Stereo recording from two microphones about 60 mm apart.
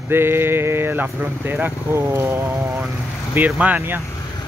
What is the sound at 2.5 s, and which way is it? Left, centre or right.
Speech, centre.